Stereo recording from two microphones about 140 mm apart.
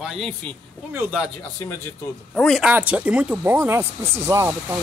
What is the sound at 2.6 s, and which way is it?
Speech, 10° right (ahead or behind).